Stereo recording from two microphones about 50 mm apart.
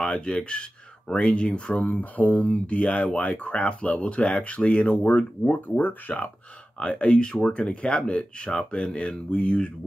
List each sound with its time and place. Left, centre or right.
0.1 s speech: left
1.9 s speech: left
6.8 s speech: left